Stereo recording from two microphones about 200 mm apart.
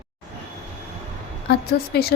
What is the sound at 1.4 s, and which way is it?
Speech, 50° left (ahead or behind).